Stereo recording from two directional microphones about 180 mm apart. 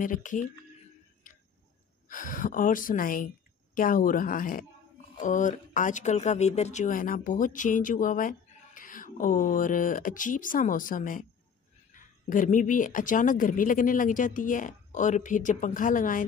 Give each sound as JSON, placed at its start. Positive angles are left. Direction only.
{"t": 0.0, "sound": "speech", "side_deg": 45}
{"t": 2.0, "sound": "speech", "side_deg": 50}